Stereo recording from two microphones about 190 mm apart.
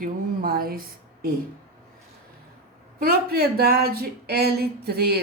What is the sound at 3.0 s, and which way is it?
Speech, 55° right (ahead or behind).